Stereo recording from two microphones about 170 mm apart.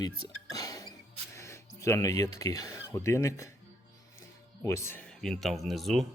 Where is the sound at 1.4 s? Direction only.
15° left (ahead or behind).